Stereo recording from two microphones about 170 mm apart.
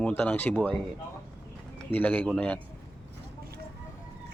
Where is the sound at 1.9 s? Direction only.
10° left (ahead or behind).